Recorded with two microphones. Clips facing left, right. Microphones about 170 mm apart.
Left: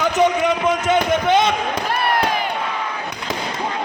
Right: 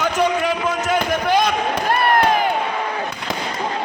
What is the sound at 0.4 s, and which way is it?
A man's voice, 25° left (ahead or behind).